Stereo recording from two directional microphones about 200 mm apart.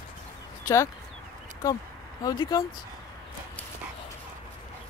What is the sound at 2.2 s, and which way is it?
Speech, 20° left (ahead or behind).